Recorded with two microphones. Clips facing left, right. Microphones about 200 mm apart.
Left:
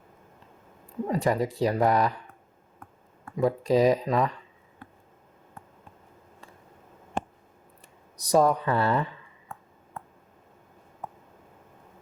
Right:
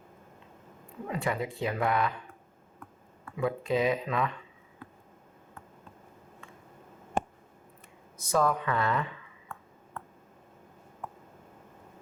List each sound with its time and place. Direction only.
1.0 s speech: 40° left (ahead or behind)
3.2 s speech: 40° left (ahead or behind)
8.2 s speech: 35° left (ahead or behind)